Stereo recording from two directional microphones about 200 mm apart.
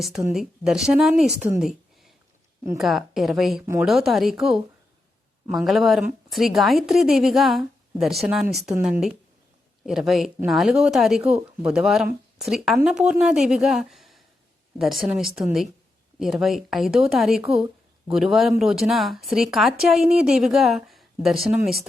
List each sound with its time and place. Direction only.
0.3 s speech: centre (ahead or behind)